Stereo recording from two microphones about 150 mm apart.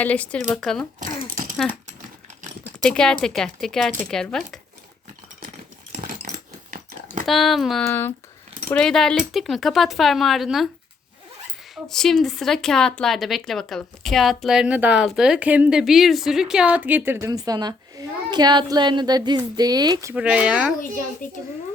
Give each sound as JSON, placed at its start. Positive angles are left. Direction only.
{"t": 0.0, "sound": "speech", "side_deg": 10}
{"t": 0.9, "sound": "a sound", "side_deg": -60}
{"t": 2.8, "sound": "speech", "side_deg": 5}
{"t": 6.0, "sound": "dog", "side_deg": -65}
{"t": 7.3, "sound": "speech", "side_deg": 0}
{"t": 7.9, "sound": "speech", "side_deg": 15}
{"t": 8.7, "sound": "speech", "side_deg": 5}
{"t": 11.7, "sound": "speech", "side_deg": 0}
{"t": 20.1, "sound": "speech", "side_deg": -5}
{"t": 21.2, "sound": "a child's voice", "side_deg": 60}